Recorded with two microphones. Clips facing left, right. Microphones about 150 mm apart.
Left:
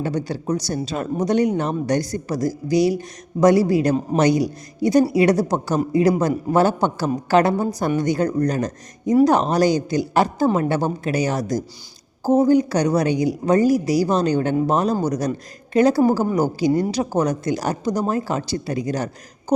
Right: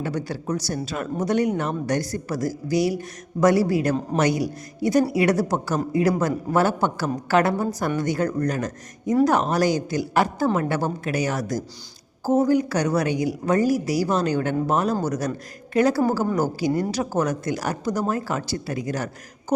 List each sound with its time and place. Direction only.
0.0 s speech: 20° left (ahead or behind)